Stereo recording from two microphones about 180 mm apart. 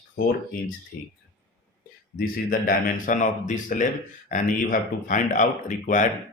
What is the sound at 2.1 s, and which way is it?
Speech, 50° left (ahead or behind).